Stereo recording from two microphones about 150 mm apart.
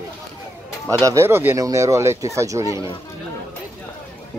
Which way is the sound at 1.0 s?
20° right (ahead or behind).